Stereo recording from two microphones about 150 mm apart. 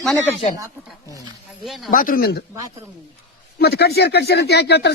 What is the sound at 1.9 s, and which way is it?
Speech, 65° left (ahead or behind).